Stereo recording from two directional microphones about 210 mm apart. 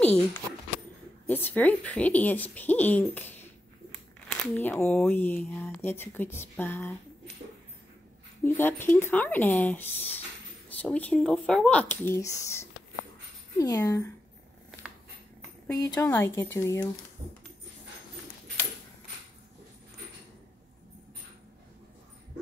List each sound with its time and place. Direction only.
0.0 s speech: 5° left (ahead or behind)
8.5 s speech: 10° left (ahead or behind)
15.6 s speech: 10° left (ahead or behind)